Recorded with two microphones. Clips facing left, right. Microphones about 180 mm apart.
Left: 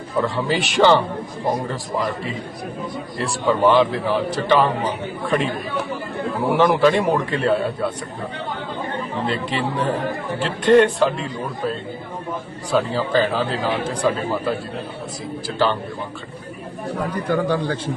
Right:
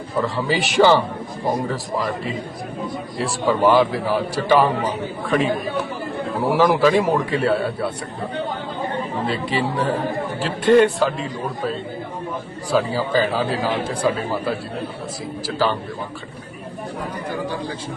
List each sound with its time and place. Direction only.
0.2 s a man's voice: centre (ahead or behind)
9.2 s a man's voice: centre (ahead or behind)
12.9 s a man's voice: 5° right (ahead or behind)
17.3 s a man's voice: 65° left (ahead or behind)